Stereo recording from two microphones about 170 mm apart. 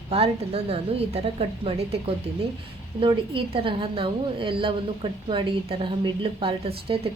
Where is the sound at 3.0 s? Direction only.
30° right (ahead or behind).